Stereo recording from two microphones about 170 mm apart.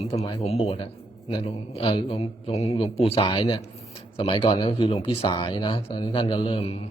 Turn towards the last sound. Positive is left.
turn(degrees=35)  # may be behind; listen again after turning